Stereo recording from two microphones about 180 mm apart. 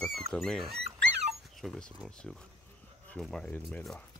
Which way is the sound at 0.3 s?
5° left (ahead or behind).